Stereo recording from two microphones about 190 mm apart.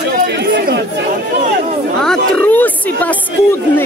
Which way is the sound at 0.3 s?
60° right (ahead or behind).